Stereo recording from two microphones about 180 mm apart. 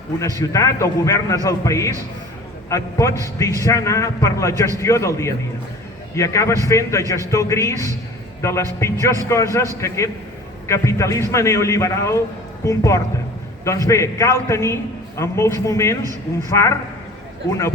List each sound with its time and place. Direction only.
0.3 s a man's voice: 15° left (ahead or behind)